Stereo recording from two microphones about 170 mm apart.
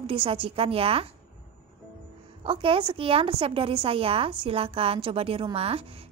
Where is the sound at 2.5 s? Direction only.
30° right (ahead or behind).